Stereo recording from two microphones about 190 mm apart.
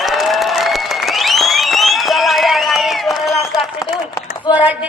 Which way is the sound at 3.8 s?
20° left (ahead or behind).